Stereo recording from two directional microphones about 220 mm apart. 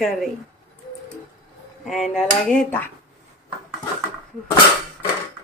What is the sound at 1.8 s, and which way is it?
Speech, centre (ahead or behind).